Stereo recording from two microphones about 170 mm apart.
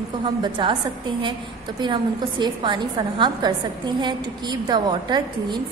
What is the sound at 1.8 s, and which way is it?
A woman's voice, 25° right (ahead or behind).